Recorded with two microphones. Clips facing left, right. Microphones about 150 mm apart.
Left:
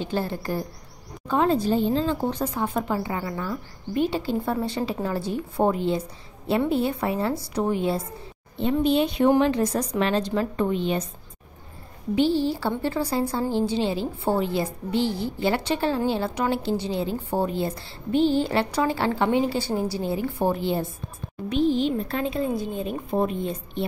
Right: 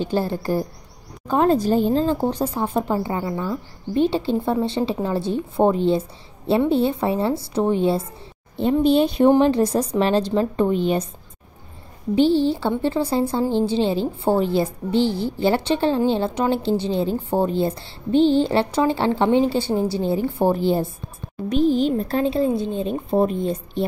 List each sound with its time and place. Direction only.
0.0 s speech: 35° right (ahead or behind)
1.3 s a woman's voice: 45° right (ahead or behind); by 10.7 s 25° right (ahead or behind)
12.2 s a woman's voice: 30° right (ahead or behind)